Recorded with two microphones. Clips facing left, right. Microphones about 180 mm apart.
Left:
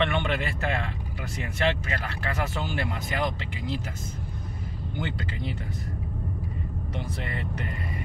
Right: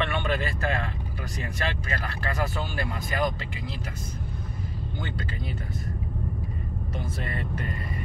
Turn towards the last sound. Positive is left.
turn(degrees=20)  # may be behind; listen again after turning